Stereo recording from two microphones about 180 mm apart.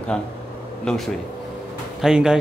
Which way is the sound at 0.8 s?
Centre (ahead or behind).